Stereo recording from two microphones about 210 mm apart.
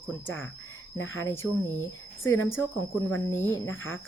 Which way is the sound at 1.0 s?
70° left (ahead or behind).